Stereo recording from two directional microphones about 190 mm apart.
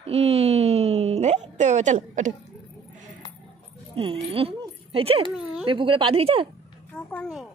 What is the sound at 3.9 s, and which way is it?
Speech, 30° right (ahead or behind).